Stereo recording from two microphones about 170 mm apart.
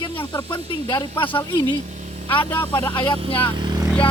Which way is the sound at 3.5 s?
25° right (ahead or behind).